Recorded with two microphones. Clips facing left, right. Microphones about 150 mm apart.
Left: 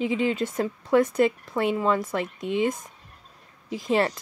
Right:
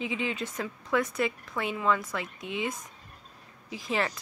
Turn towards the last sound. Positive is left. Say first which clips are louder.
# left 7 dB
turn(degrees=40)  # may be behind; listen again after turning